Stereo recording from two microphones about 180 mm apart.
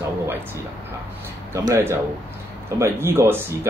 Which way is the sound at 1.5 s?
20° right (ahead or behind).